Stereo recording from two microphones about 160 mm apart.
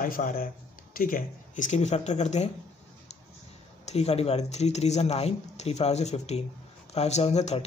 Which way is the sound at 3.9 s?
40° left (ahead or behind).